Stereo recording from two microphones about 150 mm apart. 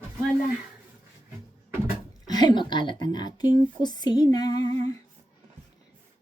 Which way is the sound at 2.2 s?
30° left (ahead or behind).